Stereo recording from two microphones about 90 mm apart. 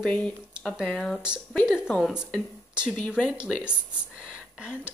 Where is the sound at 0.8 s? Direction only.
5° left (ahead or behind).